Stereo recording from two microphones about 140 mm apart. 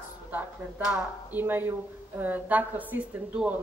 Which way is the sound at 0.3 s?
10° right (ahead or behind).